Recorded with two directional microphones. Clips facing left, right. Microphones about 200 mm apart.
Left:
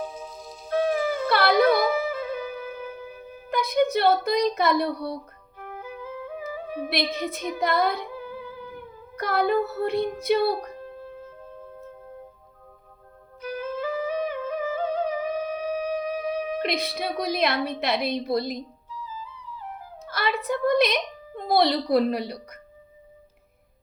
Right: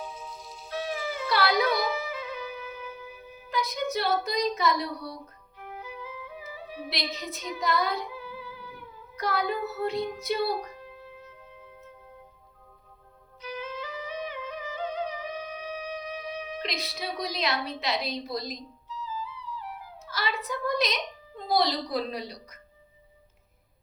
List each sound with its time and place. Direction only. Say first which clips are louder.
0.0 s music: left 6 dB; 45° left (ahead or behind)
13.4 s music: left 7 dB; 50° left (ahead or behind)
20.1 s a woman's voice: left 6 dB; 55° left (ahead or behind)